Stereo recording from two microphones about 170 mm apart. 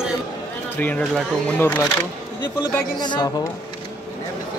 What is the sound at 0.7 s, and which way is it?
Speech, 10° left (ahead or behind).